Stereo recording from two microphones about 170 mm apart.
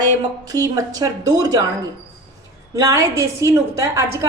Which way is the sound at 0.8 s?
20° right (ahead or behind).